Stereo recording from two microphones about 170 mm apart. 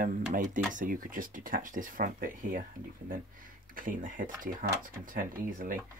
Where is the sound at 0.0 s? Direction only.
50° right (ahead or behind).